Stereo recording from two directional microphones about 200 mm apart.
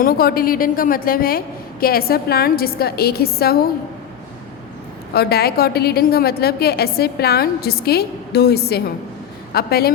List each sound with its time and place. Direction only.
0.0 s a woman's voice: 50° left (ahead or behind)
5.1 s a woman's voice: 50° left (ahead or behind)